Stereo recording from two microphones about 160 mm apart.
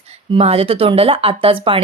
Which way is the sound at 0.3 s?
35° right (ahead or behind).